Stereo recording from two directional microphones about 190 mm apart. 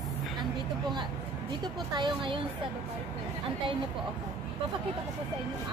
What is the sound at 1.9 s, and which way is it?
Speech, 25° right (ahead or behind).